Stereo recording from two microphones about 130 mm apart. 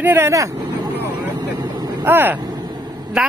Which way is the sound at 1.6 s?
30° right (ahead or behind).